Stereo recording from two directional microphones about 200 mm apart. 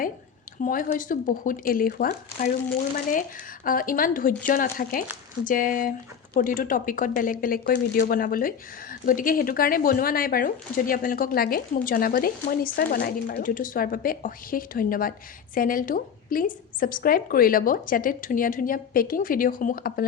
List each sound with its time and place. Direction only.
0.6 s speech: 40° left (ahead or behind)